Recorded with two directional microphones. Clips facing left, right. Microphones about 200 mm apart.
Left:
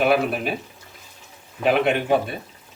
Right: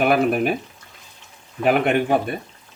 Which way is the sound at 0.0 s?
50° right (ahead or behind).